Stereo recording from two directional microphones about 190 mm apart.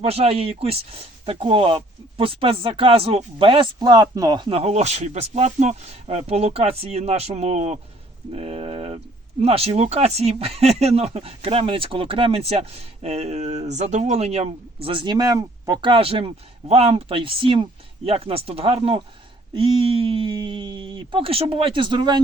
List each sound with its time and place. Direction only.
0.0 s speech: 30° right (ahead or behind)